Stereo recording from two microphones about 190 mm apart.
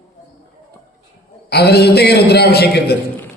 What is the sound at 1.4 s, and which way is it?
Speech, 60° left (ahead or behind).